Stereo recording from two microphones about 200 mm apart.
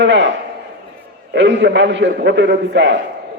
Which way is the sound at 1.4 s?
60° right (ahead or behind).